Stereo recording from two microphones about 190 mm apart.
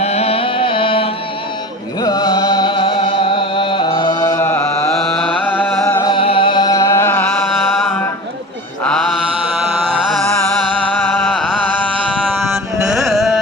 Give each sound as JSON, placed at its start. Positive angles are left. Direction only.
{"t": 0.0, "sound": "music", "side_deg": 35}
{"t": 5.8, "sound": "music", "side_deg": 20}
{"t": 8.8, "sound": "mantra", "side_deg": 5}
{"t": 11.0, "sound": "music", "side_deg": 10}
{"t": 12.9, "sound": "carnatic music", "side_deg": 0}